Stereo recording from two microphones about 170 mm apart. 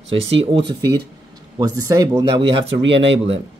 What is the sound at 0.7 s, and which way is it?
Speech, 20° right (ahead or behind).